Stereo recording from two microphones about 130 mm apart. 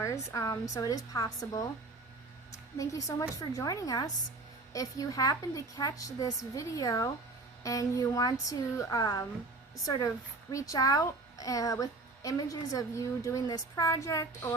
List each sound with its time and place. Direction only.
0.0 s a woman's voice: 25° left (ahead or behind)
2.7 s a woman's voice: 25° left (ahead or behind)
10.5 s a woman's voice: 25° left (ahead or behind)